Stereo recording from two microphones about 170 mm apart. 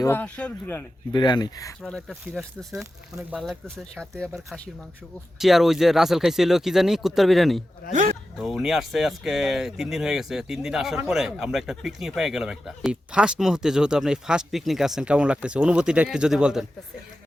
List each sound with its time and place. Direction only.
0.0 s speech: 10° left (ahead or behind)
1.1 s speech: 25° left (ahead or behind)
1.8 s speech: 5° left (ahead or behind)